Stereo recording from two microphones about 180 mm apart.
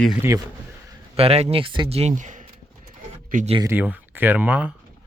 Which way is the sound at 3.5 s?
15° right (ahead or behind).